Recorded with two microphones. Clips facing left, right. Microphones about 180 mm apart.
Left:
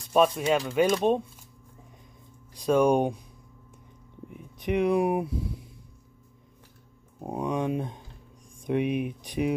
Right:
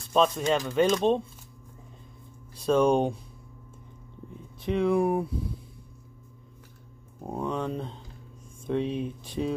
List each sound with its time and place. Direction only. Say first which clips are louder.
0.1 s speech: left 1 dB; 10° left (ahead or behind)
2.5 s speech: even; 10° left (ahead or behind)
4.3 s speech: left 1 dB; 15° left (ahead or behind)
7.2 s speech: left 2 dB; 15° left (ahead or behind)